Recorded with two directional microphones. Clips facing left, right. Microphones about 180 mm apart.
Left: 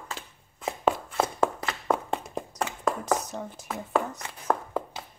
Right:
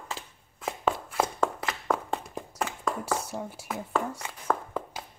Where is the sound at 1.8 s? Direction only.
20° left (ahead or behind).